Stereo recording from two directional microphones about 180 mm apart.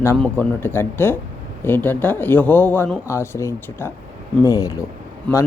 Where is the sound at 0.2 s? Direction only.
10° left (ahead or behind).